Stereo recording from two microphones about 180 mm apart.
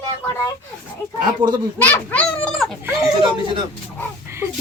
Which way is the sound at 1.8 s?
10° left (ahead or behind).